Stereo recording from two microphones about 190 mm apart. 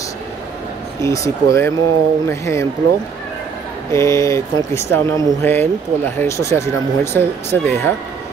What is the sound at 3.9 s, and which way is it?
Speech, 15° left (ahead or behind).